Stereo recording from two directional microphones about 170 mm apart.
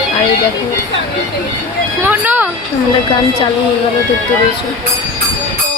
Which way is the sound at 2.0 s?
10° right (ahead or behind).